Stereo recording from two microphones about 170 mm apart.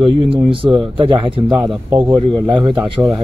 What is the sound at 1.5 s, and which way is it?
Speech, 5° right (ahead or behind).